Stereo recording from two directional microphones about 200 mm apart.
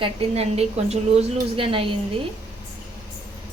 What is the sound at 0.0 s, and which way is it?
A woman's voice, 30° right (ahead or behind).